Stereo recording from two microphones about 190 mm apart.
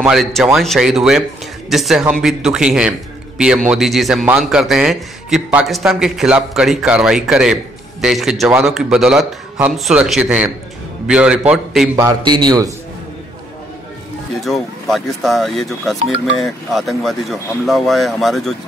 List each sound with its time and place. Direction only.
0.0 s a man's voice: centre (ahead or behind)
12.0 s a man's voice: 20° right (ahead or behind)
14.3 s a man's voice: centre (ahead or behind)